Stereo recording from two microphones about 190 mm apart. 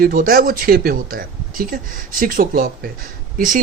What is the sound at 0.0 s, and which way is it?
Speech, 50° right (ahead or behind).